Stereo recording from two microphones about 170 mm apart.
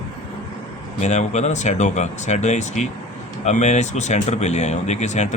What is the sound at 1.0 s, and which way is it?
Speech, 45° left (ahead or behind).